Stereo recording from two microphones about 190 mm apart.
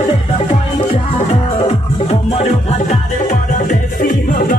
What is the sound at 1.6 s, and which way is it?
Music, 30° left (ahead or behind).